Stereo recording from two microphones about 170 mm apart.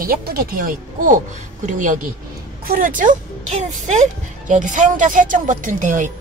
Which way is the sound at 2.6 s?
55° right (ahead or behind).